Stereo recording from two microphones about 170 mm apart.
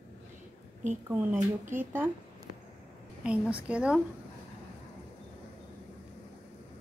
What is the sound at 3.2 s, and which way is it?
Speech, 5° right (ahead or behind).